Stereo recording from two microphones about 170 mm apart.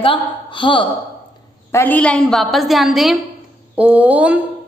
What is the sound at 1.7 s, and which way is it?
A woman's voice, 10° left (ahead or behind).